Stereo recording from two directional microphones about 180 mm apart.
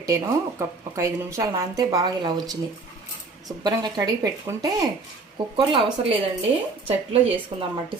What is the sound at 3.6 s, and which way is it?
Speech, 20° right (ahead or behind).